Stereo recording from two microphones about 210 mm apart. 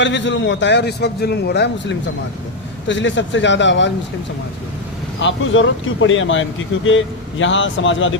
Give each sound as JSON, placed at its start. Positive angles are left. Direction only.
{"t": 0.0, "sound": "a man's voice", "side_deg": 60}
{"t": 5.2, "sound": "speech", "side_deg": 65}